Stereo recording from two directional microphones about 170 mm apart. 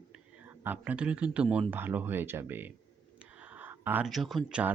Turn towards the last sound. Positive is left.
turn(degrees=-5)  # may be behind; listen again after turning